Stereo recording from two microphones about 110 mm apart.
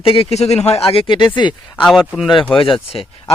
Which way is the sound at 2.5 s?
55° left (ahead or behind).